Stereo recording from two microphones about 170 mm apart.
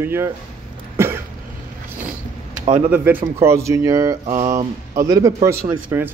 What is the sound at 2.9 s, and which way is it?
A man's voice, 10° right (ahead or behind).